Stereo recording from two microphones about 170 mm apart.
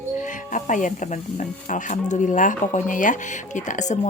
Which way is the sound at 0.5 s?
50° left (ahead or behind).